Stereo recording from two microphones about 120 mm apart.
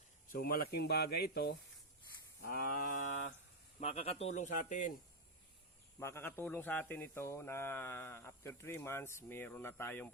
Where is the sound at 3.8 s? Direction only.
60° left (ahead or behind); by 4.9 s 90° left.